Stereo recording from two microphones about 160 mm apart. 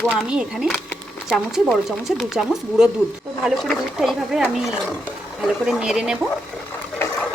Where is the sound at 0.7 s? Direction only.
10° left (ahead or behind).